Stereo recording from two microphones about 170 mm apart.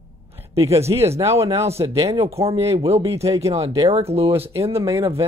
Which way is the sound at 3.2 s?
20° right (ahead or behind).